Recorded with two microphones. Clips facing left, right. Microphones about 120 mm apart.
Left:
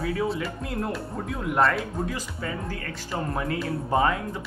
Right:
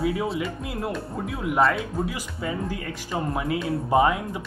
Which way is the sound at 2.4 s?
15° right (ahead or behind).